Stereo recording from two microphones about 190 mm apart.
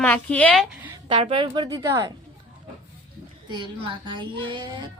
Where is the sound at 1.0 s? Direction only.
30° right (ahead or behind).